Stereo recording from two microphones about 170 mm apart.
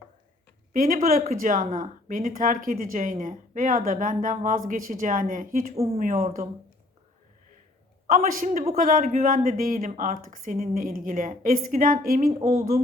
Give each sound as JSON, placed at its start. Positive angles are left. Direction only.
{"t": 0.7, "sound": "speech", "side_deg": -55}
{"t": 5.7, "sound": "speech", "side_deg": -35}
{"t": 6.0, "sound": "speech", "side_deg": -45}
{"t": 8.1, "sound": "speech", "side_deg": -55}